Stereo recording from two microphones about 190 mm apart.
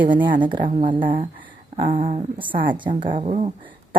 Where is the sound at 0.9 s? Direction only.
25° right (ahead or behind).